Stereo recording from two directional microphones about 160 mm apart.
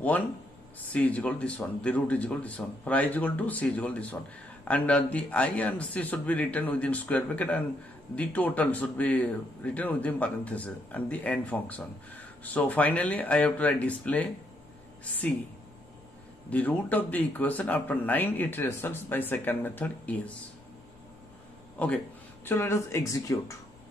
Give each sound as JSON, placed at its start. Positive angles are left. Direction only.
{"t": 0.9, "sound": "speech", "side_deg": 10}
{"t": 16.4, "sound": "speech", "side_deg": 10}
{"t": 21.7, "sound": "speech", "side_deg": 10}